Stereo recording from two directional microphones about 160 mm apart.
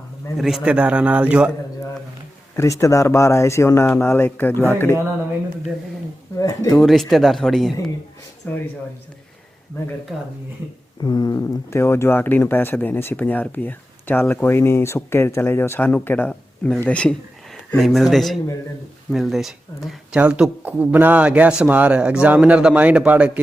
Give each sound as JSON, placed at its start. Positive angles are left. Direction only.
{"t": 0.3, "sound": "speech", "side_deg": 0}
{"t": 2.6, "sound": "speech", "side_deg": 20}
{"t": 6.4, "sound": "speech", "side_deg": 20}
{"t": 6.7, "sound": "speech", "side_deg": 0}
{"t": 10.1, "sound": "speech", "side_deg": -5}
{"t": 11.0, "sound": "speech", "side_deg": 25}